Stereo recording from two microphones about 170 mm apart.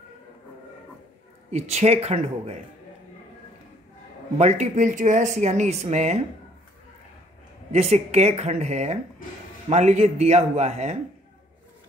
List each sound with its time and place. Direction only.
1.5 s a woman's voice: 40° right (ahead or behind)
4.4 s speech: 40° right (ahead or behind)
7.7 s a woman's voice: 40° right (ahead or behind)